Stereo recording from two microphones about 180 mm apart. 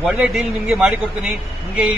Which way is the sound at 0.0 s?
5° right (ahead or behind).